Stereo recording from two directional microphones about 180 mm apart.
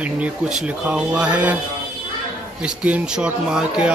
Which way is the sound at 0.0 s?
5° right (ahead or behind).